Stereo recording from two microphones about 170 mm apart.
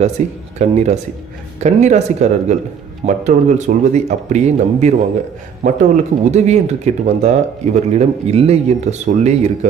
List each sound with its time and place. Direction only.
0.2 s speech: 45° right (ahead or behind)